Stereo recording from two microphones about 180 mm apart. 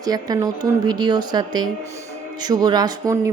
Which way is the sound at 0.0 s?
20° right (ahead or behind).